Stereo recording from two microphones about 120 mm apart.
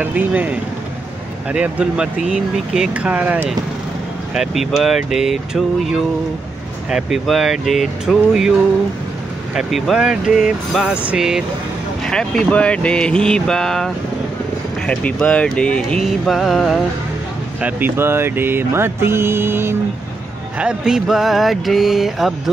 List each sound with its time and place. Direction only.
0.0 s speech: 15° right (ahead or behind)
9.6 s speech: centre (ahead or behind)
12.1 s speech: 5° left (ahead or behind)
17.6 s speech: 15° right (ahead or behind)
20.5 s speech: 5° right (ahead or behind)